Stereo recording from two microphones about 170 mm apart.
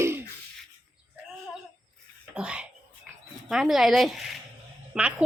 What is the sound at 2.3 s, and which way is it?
A woman's voice, 5° right (ahead or behind).